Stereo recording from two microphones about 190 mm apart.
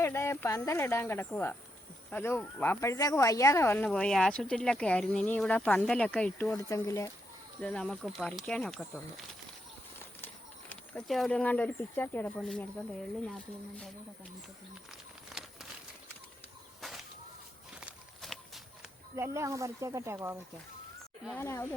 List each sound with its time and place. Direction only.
0.0 s speech: 15° left (ahead or behind)
7.6 s speech: 5° left (ahead or behind)
10.7 s speech: 5° left (ahead or behind)
14.8 s a sound: centre (ahead or behind)
17.7 s walk: centre (ahead or behind)
19.1 s speech: 15° right (ahead or behind)
21.3 s speech: 10° left (ahead or behind)